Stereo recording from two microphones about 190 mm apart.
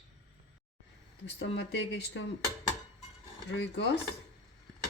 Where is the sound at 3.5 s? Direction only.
65° left (ahead or behind).